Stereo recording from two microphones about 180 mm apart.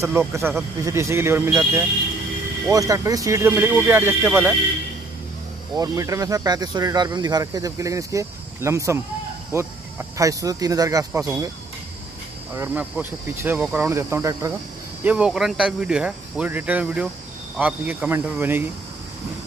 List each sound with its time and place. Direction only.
0.0 s speech: 15° right (ahead or behind)
5.8 s speech: 20° right (ahead or behind)
12.5 s speech: 10° right (ahead or behind)